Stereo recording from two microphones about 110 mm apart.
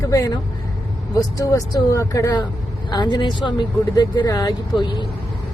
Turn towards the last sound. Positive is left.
turn(degrees=45)  # may be behind; listen again after turning